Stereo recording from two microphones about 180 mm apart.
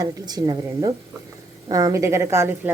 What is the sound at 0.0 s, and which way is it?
A woman's voice, 20° right (ahead or behind).